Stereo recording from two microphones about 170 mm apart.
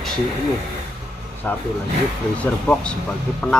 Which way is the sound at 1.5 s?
10° left (ahead or behind).